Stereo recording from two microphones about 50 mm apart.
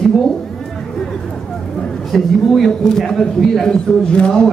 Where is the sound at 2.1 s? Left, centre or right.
Centre.